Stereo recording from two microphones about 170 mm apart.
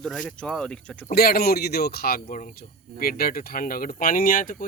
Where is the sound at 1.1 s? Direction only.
60° left (ahead or behind).